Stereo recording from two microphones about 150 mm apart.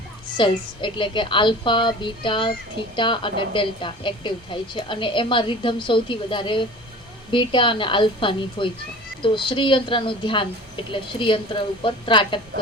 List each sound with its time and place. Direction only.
0.3 s a woman's voice: 35° left (ahead or behind)